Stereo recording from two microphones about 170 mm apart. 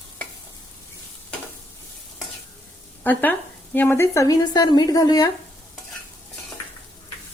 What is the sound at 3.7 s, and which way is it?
A woman's voice, 10° left (ahead or behind).